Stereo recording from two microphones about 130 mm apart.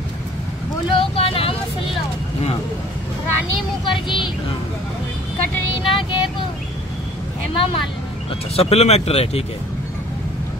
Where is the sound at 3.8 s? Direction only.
40° left (ahead or behind).